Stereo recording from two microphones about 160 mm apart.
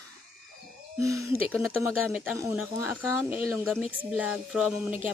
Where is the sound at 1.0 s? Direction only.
20° right (ahead or behind).